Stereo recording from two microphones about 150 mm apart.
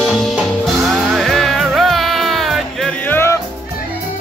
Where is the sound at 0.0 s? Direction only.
Centre (ahead or behind); by 3.3 s 15° left (ahead or behind).